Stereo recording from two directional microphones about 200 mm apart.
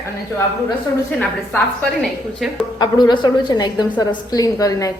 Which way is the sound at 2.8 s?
20° left (ahead or behind).